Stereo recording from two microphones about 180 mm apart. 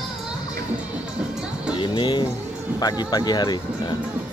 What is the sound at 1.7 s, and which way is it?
Speech, 25° left (ahead or behind).